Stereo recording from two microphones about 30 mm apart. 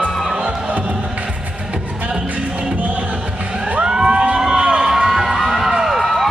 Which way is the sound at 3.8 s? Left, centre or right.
Right.